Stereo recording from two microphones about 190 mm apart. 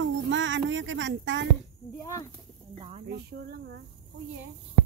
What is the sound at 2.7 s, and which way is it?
Speech, 30° right (ahead or behind).